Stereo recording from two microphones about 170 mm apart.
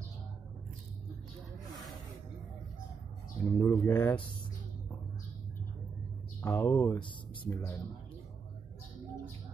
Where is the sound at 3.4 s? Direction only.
10° left (ahead or behind).